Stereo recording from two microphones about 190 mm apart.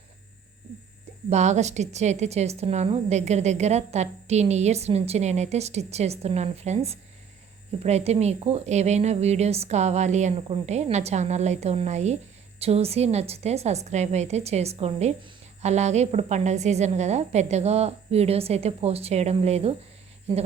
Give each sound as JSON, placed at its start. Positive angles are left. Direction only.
{"t": 1.3, "sound": "a woman's voice", "side_deg": -35}